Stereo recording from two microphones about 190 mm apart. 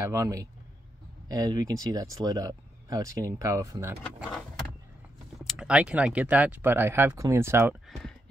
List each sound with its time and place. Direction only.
0.0 s speech: 15° right (ahead or behind)
4.2 s vehicle: centre (ahead or behind)
5.4 s speech: 5° right (ahead or behind)